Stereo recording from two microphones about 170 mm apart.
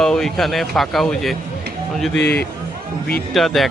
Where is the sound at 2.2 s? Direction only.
70° left (ahead or behind).